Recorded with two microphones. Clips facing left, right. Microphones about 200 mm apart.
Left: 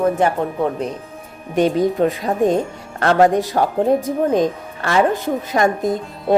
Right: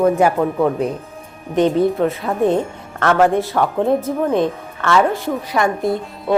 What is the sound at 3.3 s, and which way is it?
Speech, 15° left (ahead or behind).